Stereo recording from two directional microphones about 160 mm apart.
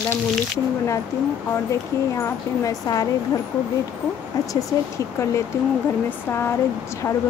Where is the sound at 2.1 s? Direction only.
20° left (ahead or behind).